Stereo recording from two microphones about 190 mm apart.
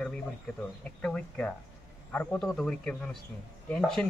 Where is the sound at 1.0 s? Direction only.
5° left (ahead or behind).